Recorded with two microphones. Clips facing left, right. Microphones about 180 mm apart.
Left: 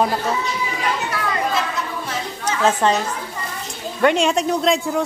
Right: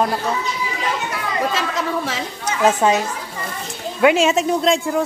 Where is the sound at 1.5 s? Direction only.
90° right.